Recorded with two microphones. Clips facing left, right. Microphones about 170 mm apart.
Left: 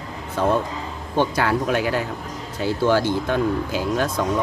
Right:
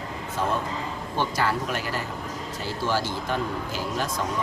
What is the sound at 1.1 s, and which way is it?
Speech, 60° left (ahead or behind).